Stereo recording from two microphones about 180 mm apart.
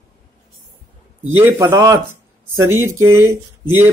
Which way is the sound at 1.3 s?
15° right (ahead or behind).